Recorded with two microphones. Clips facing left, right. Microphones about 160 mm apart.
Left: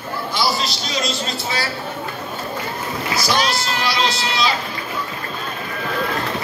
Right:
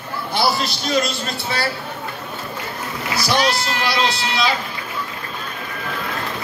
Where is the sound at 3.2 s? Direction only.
60° right (ahead or behind).